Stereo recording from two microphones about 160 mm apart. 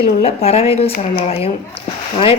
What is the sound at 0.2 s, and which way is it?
A woman's voice, 40° left (ahead or behind).